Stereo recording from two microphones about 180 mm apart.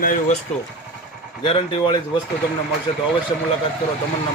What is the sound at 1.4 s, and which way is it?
Speech, 30° left (ahead or behind).